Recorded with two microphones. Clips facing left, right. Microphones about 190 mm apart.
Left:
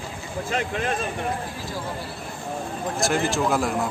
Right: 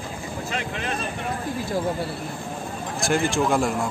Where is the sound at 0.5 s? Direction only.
45° left (ahead or behind).